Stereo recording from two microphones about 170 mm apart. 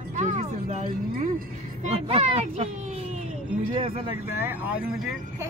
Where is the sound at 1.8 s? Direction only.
35° right (ahead or behind).